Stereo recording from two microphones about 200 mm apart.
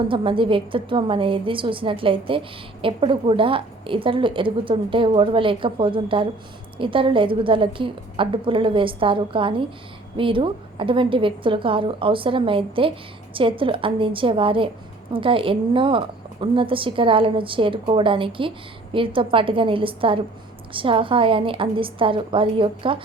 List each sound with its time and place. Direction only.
0.1 s a woman's voice: 25° right (ahead or behind)